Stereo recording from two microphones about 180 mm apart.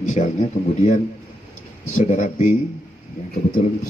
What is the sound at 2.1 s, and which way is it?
Speech, 40° left (ahead or behind).